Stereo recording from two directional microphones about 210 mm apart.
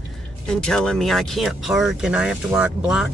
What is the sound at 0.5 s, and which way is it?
Speech, 5° left (ahead or behind).